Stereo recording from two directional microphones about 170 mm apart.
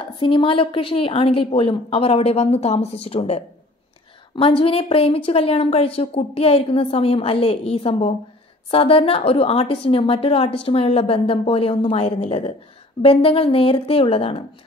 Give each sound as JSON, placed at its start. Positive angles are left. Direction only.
{"t": 0.2, "sound": "a woman's voice", "side_deg": 30}